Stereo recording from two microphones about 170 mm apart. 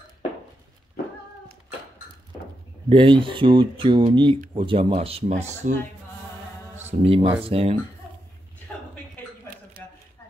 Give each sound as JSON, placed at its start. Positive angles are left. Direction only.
{"t": 2.9, "sound": "speech", "side_deg": -30}
{"t": 6.9, "sound": "speech", "side_deg": -40}
{"t": 9.8, "sound": "a sound", "side_deg": -60}